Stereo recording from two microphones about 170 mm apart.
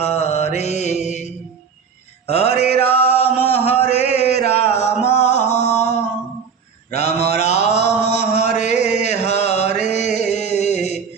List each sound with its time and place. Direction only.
0.0 s mantra: 40° left (ahead or behind)
2.8 s chant: 35° left (ahead or behind)
4.5 s a sound: 40° left (ahead or behind)
6.9 s mantra: 40° left (ahead or behind)
7.3 s chant: 40° left (ahead or behind)